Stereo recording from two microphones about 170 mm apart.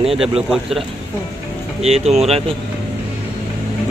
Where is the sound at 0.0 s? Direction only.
Centre (ahead or behind).